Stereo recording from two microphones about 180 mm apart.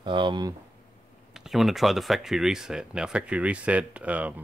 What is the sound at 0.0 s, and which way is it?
Speech, 25° right (ahead or behind).